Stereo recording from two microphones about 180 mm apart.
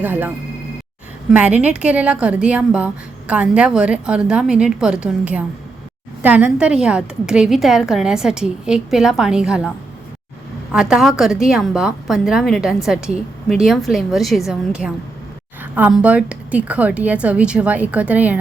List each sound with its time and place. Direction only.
0.0 s a woman's voice: 10° right (ahead or behind)
1.3 s a woman's voice: 10° right (ahead or behind)